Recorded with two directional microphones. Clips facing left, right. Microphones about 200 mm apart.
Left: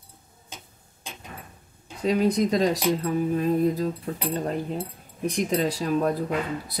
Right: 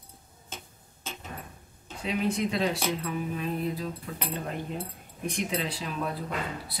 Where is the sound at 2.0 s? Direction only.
40° left (ahead or behind).